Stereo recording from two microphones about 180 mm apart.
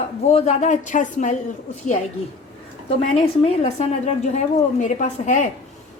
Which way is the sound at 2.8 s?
35° left (ahead or behind).